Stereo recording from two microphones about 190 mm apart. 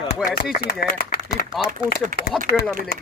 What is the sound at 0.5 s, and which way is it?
Speech, 50° left (ahead or behind).